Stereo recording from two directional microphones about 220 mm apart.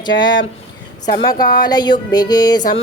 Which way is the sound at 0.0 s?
20° left (ahead or behind).